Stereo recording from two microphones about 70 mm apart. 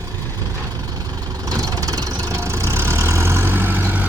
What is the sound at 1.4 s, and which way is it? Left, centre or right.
Vehicle, right.